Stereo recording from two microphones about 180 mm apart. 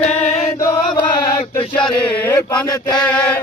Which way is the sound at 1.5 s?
10° left (ahead or behind).